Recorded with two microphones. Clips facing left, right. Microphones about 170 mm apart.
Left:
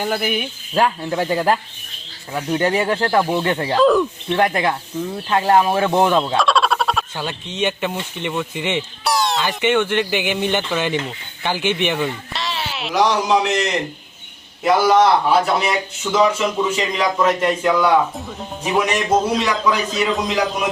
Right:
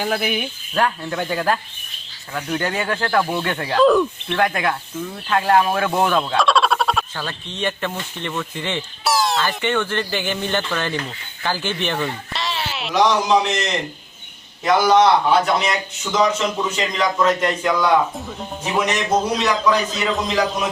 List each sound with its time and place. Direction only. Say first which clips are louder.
0.0 s speech: left 1 dB; centre (ahead or behind)
1.2 s a man's voice: left 3 dB; 10° left (ahead or behind)
3.8 s speech: even; centre (ahead or behind)
4.3 s speech: left 2 dB; 25° left (ahead or behind)
6.3 s frog: even; centre (ahead or behind)
7.2 s a man's voice: left 3 dB; 15° left (ahead or behind)
9.0 s music: right 1 dB; centre (ahead or behind)
9.6 s a man's voice: left 4 dB; 15° left (ahead or behind)
12.3 s a man's voice: even; centre (ahead or behind)